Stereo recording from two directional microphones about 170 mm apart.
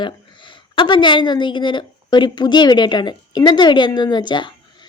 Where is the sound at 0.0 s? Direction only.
30° left (ahead or behind).